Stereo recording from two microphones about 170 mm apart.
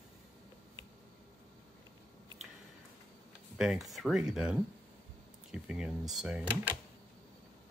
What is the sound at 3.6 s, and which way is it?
Speech, centre (ahead or behind).